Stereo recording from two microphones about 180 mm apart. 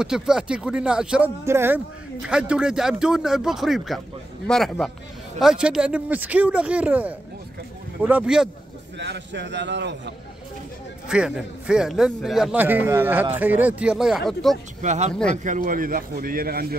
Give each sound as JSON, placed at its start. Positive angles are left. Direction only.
{"t": 0.0, "sound": "speech", "side_deg": -5}
{"t": 8.9, "sound": "a man's voice", "side_deg": -75}
{"t": 11.1, "sound": "speech", "side_deg": -5}
{"t": 14.8, "sound": "speech", "side_deg": -40}